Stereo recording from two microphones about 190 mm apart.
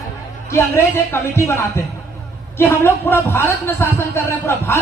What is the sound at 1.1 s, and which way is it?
Speech, 15° left (ahead or behind).